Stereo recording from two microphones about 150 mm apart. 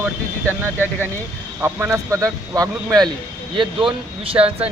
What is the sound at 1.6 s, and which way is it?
Speech, 10° right (ahead or behind).